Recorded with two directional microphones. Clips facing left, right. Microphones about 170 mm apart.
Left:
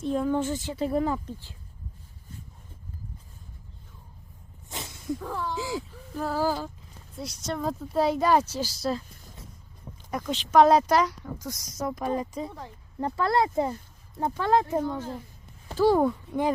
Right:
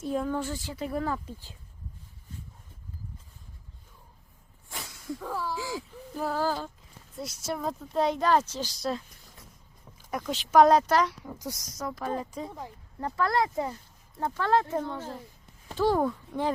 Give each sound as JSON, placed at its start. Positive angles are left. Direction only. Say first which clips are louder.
{"t": 0.0, "sound": "speech", "louder": "left 3 dB", "side_deg": -5}
{"t": 0.3, "sound": "speech", "louder": "left 5 dB", "side_deg": 20}
{"t": 4.7, "sound": "snake", "louder": "left 3 dB", "side_deg": 25}
{"t": 5.2, "sound": "speech", "louder": "left 1 dB", "side_deg": -5}
{"t": 5.5, "sound": "speech", "louder": "left 3 dB", "side_deg": 20}
{"t": 7.2, "sound": "speech", "louder": "left 2 dB", "side_deg": -5}
{"t": 10.1, "sound": "speech", "louder": "left 1 dB", "side_deg": 0}
{"t": 10.7, "sound": "speech", "louder": "left 1 dB", "side_deg": 10}
{"t": 11.1, "sound": "speech", "louder": "left 1 dB", "side_deg": -10}
{"t": 11.8, "sound": "speech", "louder": "left 4 dB", "side_deg": 20}
{"t": 12.5, "sound": "speech", "louder": "even", "side_deg": -10}
{"t": 13.0, "sound": "speech", "louder": "left 2 dB", "side_deg": 25}